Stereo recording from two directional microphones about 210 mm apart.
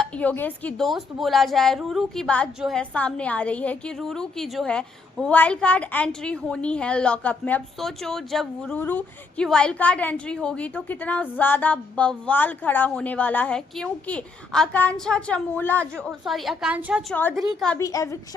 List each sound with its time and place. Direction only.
0.0 s speech: 5° left (ahead or behind)
17.2 s a woman's voice: 10° left (ahead or behind)